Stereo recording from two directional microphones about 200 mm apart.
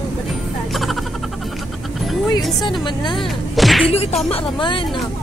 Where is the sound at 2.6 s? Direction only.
25° left (ahead or behind).